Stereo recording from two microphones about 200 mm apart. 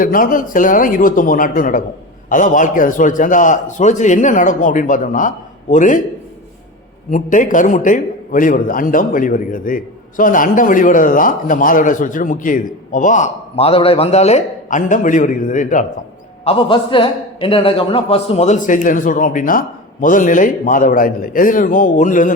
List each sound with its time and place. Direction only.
0.0 s a man's voice: 45° left (ahead or behind)
7.1 s a man's voice: 40° left (ahead or behind)
16.4 s a man's voice: 30° left (ahead or behind)